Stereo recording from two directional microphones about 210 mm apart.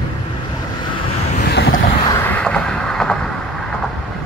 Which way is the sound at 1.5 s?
50° left (ahead or behind).